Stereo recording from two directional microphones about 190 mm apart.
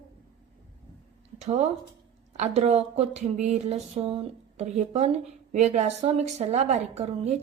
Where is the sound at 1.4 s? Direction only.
35° right (ahead or behind).